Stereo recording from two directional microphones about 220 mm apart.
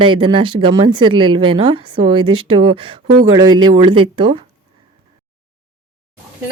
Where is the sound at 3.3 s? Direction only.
20° right (ahead or behind).